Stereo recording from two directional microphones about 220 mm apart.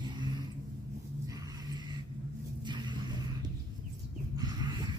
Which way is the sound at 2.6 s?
20° right (ahead or behind).